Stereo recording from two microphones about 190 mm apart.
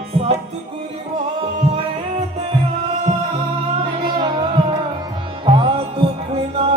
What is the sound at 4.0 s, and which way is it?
Music, 25° right (ahead or behind).